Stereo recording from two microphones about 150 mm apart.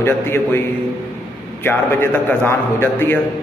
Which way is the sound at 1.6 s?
15° left (ahead or behind).